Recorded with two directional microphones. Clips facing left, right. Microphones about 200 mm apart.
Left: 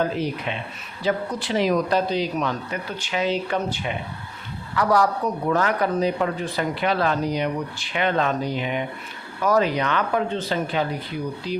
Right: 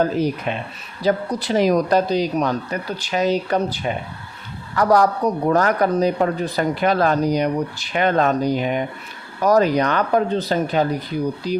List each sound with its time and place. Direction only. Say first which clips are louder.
0.0 s speech: right 5 dB; 45° right (ahead or behind)